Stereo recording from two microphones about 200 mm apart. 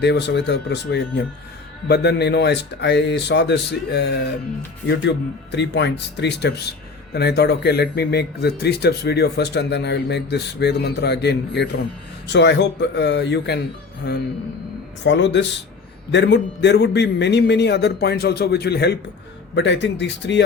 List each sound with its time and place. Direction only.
0.0 s speech: 60° left (ahead or behind)